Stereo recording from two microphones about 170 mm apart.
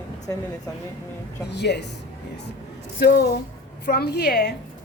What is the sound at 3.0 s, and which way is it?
A woman's voice, 70° left (ahead or behind).